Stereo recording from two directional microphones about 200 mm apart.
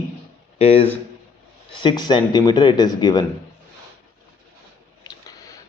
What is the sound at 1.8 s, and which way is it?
A man's voice, 25° left (ahead or behind).